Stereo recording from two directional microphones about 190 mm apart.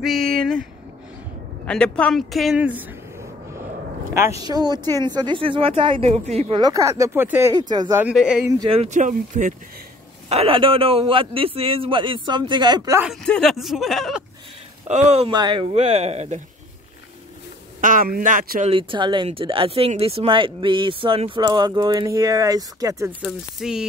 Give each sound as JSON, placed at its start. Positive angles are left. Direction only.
{"t": 1.7, "sound": "speech", "side_deg": 5}
{"t": 4.4, "sound": "speech", "side_deg": -20}
{"t": 6.6, "sound": "speech", "side_deg": -15}
{"t": 7.5, "sound": "speech", "side_deg": -20}
{"t": 8.0, "sound": "speech", "side_deg": -5}
{"t": 8.6, "sound": "speech", "side_deg": -30}
{"t": 10.3, "sound": "speech", "side_deg": -30}
{"t": 13.0, "sound": "speech", "side_deg": 0}
{"t": 14.9, "sound": "speech", "side_deg": -35}
{"t": 17.7, "sound": "a man's voice", "side_deg": -45}
{"t": 18.7, "sound": "speech", "side_deg": -25}
{"t": 23.2, "sound": "speech", "side_deg": -5}